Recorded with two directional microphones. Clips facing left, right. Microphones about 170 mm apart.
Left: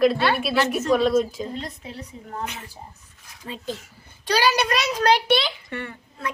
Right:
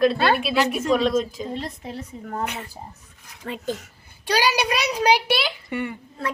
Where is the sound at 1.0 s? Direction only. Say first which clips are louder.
Left 2 dB; 5° left (ahead or behind).